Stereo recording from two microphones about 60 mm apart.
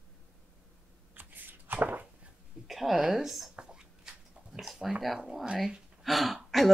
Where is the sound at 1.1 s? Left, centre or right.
Right.